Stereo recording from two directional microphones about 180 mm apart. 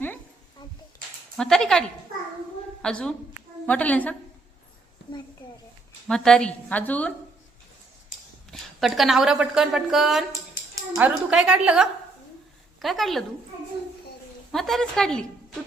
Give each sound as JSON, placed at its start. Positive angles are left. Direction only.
{"t": 0.6, "sound": "a sound", "side_deg": 25}
{"t": 1.4, "sound": "a woman's voice", "side_deg": 5}
{"t": 2.8, "sound": "a woman's voice", "side_deg": 5}
{"t": 6.1, "sound": "a woman's voice", "side_deg": 5}
{"t": 8.4, "sound": "a woman's voice", "side_deg": 0}
{"t": 14.5, "sound": "a woman's voice", "side_deg": 0}